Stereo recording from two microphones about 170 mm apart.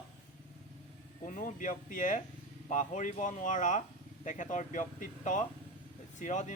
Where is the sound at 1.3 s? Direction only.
50° left (ahead or behind).